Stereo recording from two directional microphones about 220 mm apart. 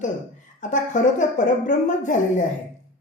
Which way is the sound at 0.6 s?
35° left (ahead or behind).